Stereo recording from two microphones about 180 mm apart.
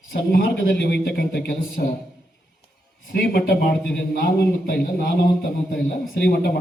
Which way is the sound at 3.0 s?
55° left (ahead or behind).